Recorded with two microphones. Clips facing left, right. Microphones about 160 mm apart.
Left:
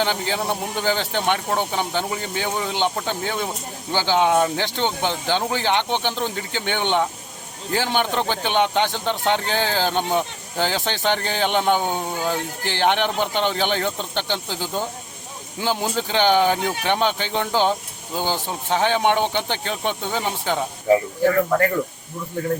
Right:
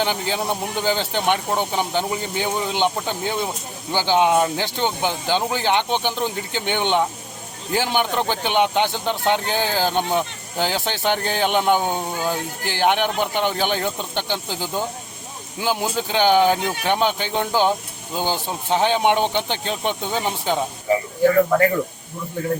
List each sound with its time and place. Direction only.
0.0 s speech: 15° right (ahead or behind)